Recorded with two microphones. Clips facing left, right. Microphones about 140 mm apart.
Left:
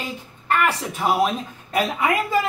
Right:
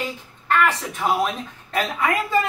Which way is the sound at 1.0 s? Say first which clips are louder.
Left 1 dB; 10° left (ahead or behind).